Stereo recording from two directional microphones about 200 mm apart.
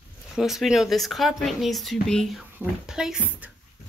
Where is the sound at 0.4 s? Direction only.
Centre (ahead or behind).